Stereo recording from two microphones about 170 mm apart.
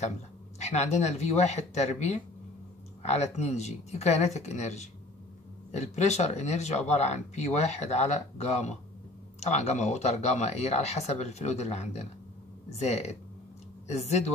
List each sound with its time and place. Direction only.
0.6 s speech: 40° left (ahead or behind)